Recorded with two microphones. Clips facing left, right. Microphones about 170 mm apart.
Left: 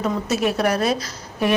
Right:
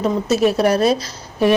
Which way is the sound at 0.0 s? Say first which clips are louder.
Right 5 dB; 30° right (ahead or behind).